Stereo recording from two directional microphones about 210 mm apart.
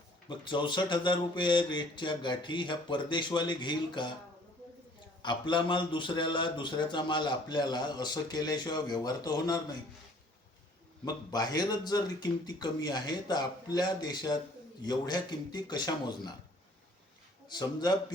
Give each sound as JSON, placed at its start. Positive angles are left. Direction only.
{"t": 0.3, "sound": "a man's voice", "side_deg": 20}
{"t": 5.2, "sound": "a man's voice", "side_deg": 20}
{"t": 11.0, "sound": "a man's voice", "side_deg": 20}
{"t": 17.5, "sound": "a man's voice", "side_deg": 20}